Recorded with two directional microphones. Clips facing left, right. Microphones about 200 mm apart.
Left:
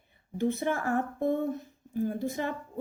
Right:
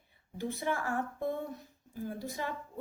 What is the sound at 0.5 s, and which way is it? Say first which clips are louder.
Speech: left 4 dB; 50° left (ahead or behind).